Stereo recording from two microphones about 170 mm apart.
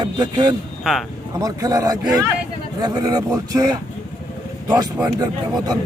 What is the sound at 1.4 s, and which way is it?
A man's voice, 20° right (ahead or behind).